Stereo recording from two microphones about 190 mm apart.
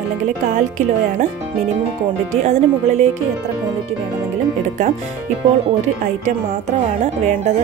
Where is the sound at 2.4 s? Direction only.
35° right (ahead or behind).